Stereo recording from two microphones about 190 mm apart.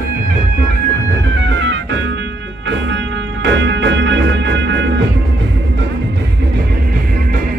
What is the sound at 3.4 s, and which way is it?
Music, 70° right (ahead or behind).